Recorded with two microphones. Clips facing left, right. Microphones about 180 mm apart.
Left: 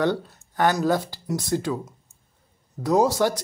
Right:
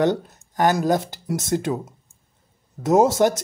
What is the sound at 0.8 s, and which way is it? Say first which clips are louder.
Speech: right 2 dB; 20° right (ahead or behind).